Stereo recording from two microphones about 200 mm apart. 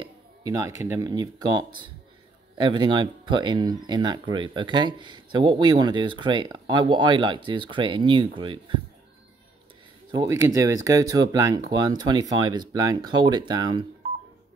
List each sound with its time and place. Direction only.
0.0 s speech: 20° right (ahead or behind)
10.1 s speech: 15° right (ahead or behind)